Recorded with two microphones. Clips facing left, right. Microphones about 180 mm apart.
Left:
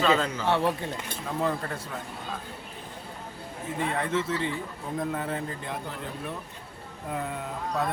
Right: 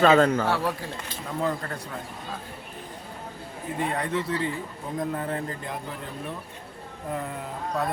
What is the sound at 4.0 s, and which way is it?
A man's voice, centre (ahead or behind).